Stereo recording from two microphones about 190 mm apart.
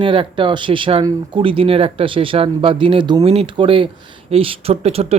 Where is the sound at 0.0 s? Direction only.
25° right (ahead or behind).